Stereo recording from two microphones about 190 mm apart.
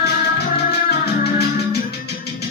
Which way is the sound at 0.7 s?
60° left (ahead or behind).